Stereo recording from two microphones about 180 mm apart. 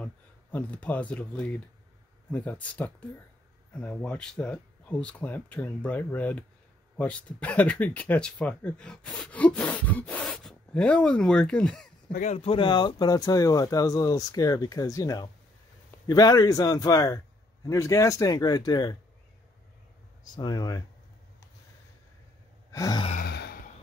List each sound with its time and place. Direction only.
0.0 s speech: 10° left (ahead or behind)
12.1 s speech: 40° left (ahead or behind); by 18.9 s 20° left (ahead or behind)
20.3 s speech: 20° left (ahead or behind)
22.7 s sigh: 20° left (ahead or behind)
23.2 s sigh: 65° left (ahead or behind)